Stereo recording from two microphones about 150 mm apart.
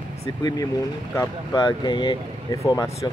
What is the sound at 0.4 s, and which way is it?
Speech, 25° left (ahead or behind).